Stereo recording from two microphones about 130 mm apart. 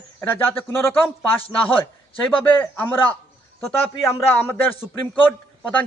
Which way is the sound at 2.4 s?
15° left (ahead or behind).